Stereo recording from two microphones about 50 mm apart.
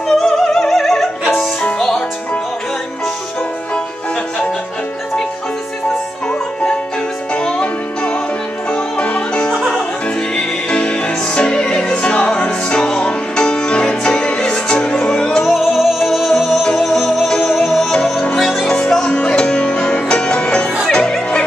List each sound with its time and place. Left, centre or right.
0.1 s music: centre
7.3 s music: left
9.6 s music: centre
15.4 s music: centre
16.6 s music: centre
18.7 s music: centre